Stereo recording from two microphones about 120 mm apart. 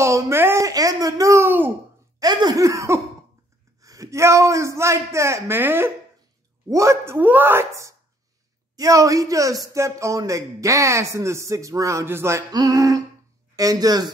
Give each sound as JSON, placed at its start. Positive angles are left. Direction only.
{"t": 0.0, "sound": "a sound", "side_deg": -20}
{"t": 2.1, "sound": "cough", "side_deg": -30}
{"t": 3.8, "sound": "a man's voice", "side_deg": -30}